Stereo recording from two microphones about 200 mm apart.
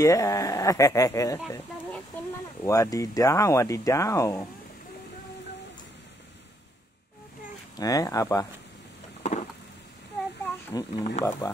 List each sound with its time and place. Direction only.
0.0 s speech: 15° left (ahead or behind)
2.6 s speech: 15° left (ahead or behind)
7.7 s speech: 20° left (ahead or behind)
9.2 s a sound: 35° left (ahead or behind)
10.4 s a sound: 15° left (ahead or behind)
11.4 s speech: 15° left (ahead or behind)